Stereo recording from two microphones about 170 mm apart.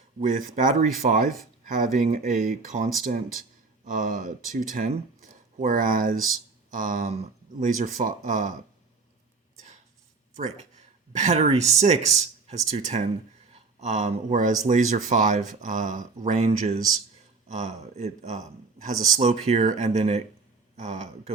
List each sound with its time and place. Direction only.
0.2 s speech: 50° right (ahead or behind)
11.1 s speech: 40° right (ahead or behind)